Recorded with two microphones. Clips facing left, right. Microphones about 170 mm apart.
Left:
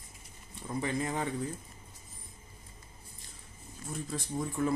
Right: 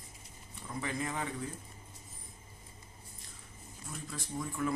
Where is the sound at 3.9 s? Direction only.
35° left (ahead or behind).